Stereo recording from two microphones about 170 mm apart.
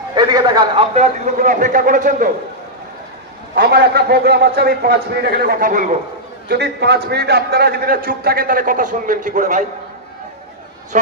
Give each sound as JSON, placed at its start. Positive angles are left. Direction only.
{"t": 0.1, "sound": "a man's voice", "side_deg": -25}
{"t": 0.9, "sound": "a man's voice", "side_deg": -40}
{"t": 3.5, "sound": "a man's voice", "side_deg": -65}
{"t": 6.5, "sound": "a man's voice", "side_deg": -80}
{"t": 10.9, "sound": "a man's voice", "side_deg": -50}